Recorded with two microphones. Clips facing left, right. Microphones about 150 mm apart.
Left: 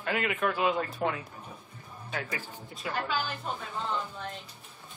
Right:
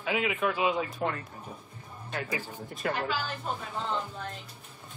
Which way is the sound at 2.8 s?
60° right (ahead or behind).